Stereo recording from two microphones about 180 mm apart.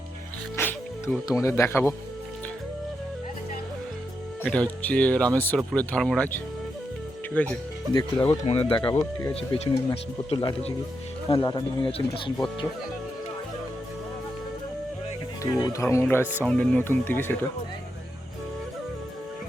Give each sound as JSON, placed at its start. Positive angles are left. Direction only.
{"t": 0.5, "sound": "speech", "side_deg": 15}
{"t": 4.4, "sound": "speech", "side_deg": 5}
{"t": 7.9, "sound": "speech", "side_deg": 30}
{"t": 15.6, "sound": "speech", "side_deg": 15}